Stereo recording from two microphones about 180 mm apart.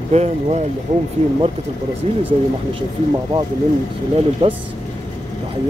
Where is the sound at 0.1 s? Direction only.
40° right (ahead or behind).